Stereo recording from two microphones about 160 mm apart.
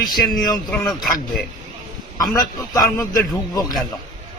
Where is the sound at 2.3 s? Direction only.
20° left (ahead or behind).